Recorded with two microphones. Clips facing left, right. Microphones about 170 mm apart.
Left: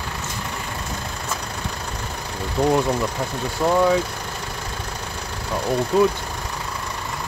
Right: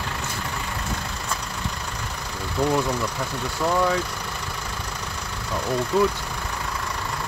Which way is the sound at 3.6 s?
20° left (ahead or behind).